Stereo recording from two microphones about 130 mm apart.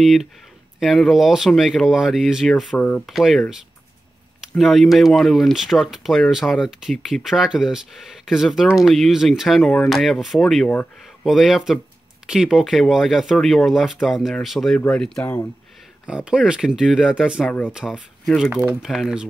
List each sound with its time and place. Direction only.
0.0 s speech: centre (ahead or behind)
4.6 s speech: centre (ahead or behind)
16.1 s speech: 5° right (ahead or behind)
18.5 s speech: 15° right (ahead or behind)
18.8 s speech: centre (ahead or behind)